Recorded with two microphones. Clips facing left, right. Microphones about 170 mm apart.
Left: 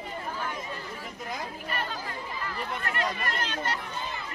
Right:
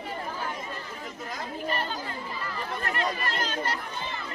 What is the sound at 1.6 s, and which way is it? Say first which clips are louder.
Speech: right 6 dB; 30° right (ahead or behind).